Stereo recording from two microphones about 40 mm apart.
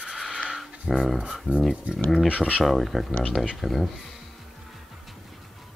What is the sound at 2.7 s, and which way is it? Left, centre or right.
Speech, centre.